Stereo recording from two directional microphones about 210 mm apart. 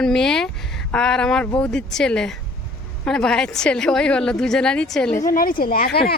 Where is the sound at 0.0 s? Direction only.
5° left (ahead or behind).